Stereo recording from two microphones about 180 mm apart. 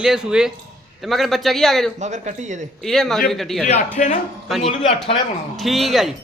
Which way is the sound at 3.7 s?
40° left (ahead or behind).